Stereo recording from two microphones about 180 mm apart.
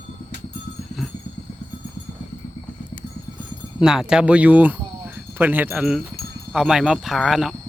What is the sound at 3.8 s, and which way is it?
Speech, 5° right (ahead or behind).